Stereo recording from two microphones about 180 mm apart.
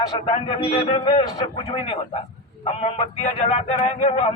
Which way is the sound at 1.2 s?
20° left (ahead or behind).